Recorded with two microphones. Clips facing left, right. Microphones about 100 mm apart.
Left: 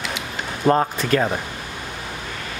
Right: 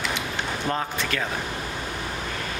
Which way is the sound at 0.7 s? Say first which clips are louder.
Left 12 dB; 40° left (ahead or behind).